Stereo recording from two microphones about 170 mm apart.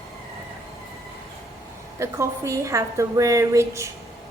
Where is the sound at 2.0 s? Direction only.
20° right (ahead or behind).